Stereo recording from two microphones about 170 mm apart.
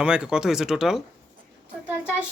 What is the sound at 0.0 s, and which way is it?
A woman's voice, 5° right (ahead or behind).